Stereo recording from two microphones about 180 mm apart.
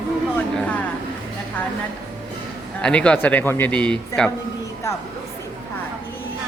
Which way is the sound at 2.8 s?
5° left (ahead or behind).